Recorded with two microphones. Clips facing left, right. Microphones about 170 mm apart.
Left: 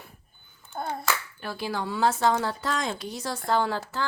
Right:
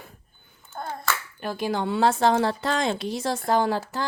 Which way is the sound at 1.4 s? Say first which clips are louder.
Right 5 dB; 20° right (ahead or behind).